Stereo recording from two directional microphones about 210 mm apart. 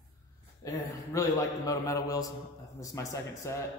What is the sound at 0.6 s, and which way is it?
Mantra, 15° left (ahead or behind).